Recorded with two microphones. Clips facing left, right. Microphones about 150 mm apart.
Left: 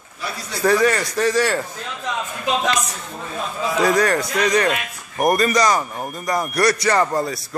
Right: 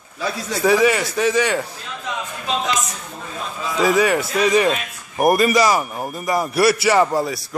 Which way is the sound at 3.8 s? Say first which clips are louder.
Right 2 dB; 5° right (ahead or behind).